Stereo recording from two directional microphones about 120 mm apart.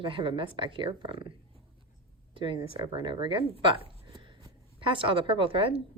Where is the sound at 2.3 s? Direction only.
45° right (ahead or behind).